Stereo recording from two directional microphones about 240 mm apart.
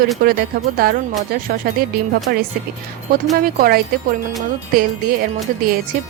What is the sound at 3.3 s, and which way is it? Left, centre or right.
Speech, right.